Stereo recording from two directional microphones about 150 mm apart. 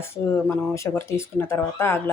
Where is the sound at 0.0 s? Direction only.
20° left (ahead or behind).